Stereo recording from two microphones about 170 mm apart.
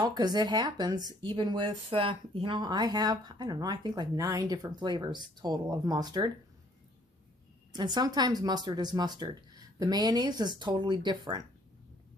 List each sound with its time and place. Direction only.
0.0 s speech: 25° right (ahead or behind)
7.7 s speech: 25° right (ahead or behind)